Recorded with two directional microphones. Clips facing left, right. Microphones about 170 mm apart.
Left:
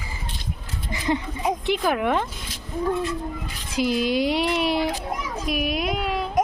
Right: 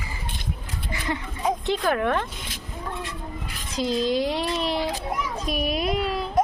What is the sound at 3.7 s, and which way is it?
Child singing, 10° left (ahead or behind).